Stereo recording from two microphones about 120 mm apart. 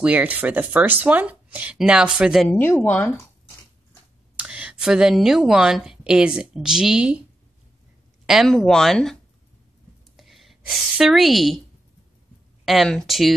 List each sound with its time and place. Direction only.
0.0 s speech: 15° right (ahead or behind)
2.4 s speech: 15° left (ahead or behind)
4.4 s a woman's voice: 10° right (ahead or behind)
8.3 s a woman's voice: centre (ahead or behind)
12.6 s speech: centre (ahead or behind)